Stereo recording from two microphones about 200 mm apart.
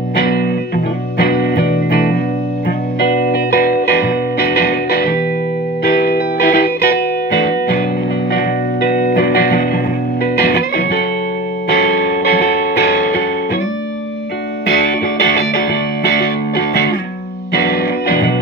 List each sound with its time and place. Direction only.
0.1 s music: 45° left (ahead or behind)
14.7 s music: 55° left (ahead or behind)
16.1 s music: 55° left (ahead or behind)